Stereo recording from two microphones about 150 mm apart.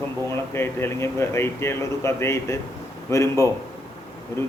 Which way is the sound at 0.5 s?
15° left (ahead or behind).